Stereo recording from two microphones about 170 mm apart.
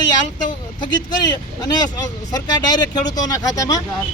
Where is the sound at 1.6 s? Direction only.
20° left (ahead or behind).